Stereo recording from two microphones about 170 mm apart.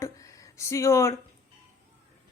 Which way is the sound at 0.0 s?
15° left (ahead or behind).